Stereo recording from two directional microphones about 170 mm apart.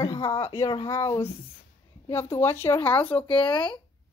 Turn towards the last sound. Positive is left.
turn(degrees=30)  # may be behind; listen again after turning